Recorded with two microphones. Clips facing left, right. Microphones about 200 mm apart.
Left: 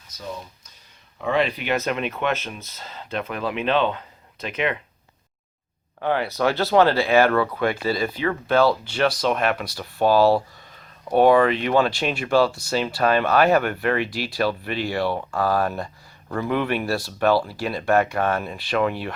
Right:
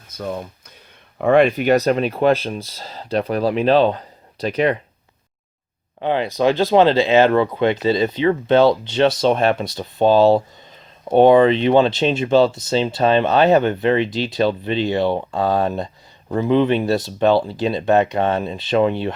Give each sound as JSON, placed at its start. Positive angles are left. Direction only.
{"t": 0.1, "sound": "speech", "side_deg": -55}
{"t": 6.0, "sound": "speech", "side_deg": -20}